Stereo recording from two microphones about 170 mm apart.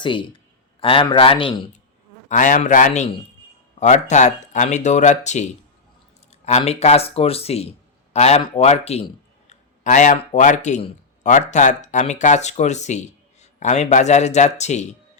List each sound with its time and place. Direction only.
0.0 s a man's voice: 30° left (ahead or behind)
2.3 s speech: 50° left (ahead or behind)
6.6 s a man's voice: 40° left (ahead or behind)